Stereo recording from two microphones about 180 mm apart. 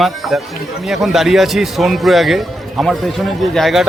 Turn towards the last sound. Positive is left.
turn(degrees=0)  # may be behind; listen again after turning